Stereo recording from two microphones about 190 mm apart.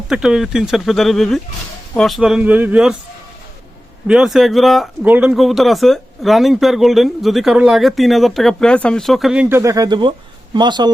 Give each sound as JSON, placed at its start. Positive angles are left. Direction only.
{"t": 0.1, "sound": "speech", "side_deg": -5}
{"t": 4.0, "sound": "a man's voice", "side_deg": -5}